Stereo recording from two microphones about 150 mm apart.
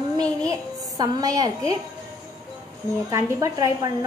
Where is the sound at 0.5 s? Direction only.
25° right (ahead or behind).